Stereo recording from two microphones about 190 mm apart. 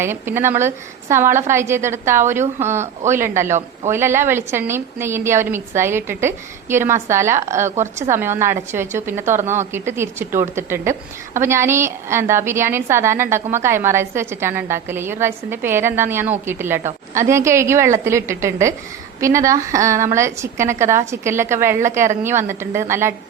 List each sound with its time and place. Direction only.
0.0 s a woman's voice: 15° right (ahead or behind)